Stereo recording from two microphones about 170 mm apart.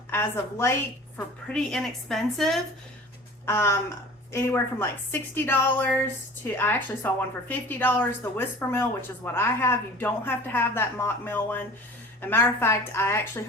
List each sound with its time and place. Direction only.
0.1 s a woman's voice: 15° left (ahead or behind)
3.4 s a woman's voice: 15° left (ahead or behind)